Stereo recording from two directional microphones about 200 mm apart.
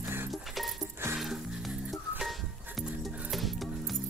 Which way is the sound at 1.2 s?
Centre (ahead or behind).